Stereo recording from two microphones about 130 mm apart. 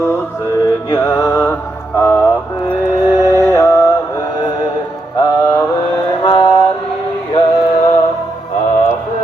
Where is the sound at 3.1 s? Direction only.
25° left (ahead or behind).